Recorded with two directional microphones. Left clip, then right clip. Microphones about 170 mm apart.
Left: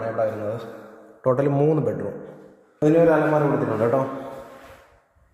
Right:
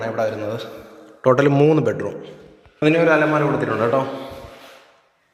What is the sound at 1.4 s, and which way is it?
Speech, 5° left (ahead or behind).